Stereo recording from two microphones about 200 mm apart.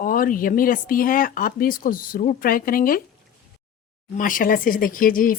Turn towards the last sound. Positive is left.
turn(degrees=45)  # may be behind; listen again after turning